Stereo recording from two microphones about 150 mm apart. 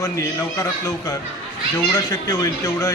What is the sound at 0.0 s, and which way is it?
A man's voice, 20° left (ahead or behind).